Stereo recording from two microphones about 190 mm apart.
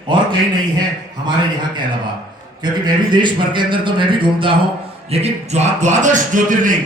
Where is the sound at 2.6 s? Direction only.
25° right (ahead or behind).